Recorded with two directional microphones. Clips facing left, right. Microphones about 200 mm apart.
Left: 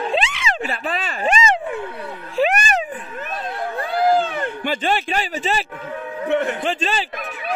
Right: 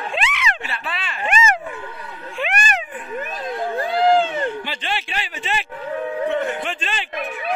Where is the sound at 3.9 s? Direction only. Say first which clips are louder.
Right 1 dB; 25° right (ahead or behind).